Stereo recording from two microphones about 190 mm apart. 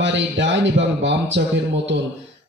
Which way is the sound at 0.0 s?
70° right (ahead or behind).